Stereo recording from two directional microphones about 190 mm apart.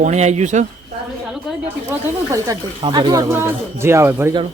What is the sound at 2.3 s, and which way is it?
Speech, 20° right (ahead or behind).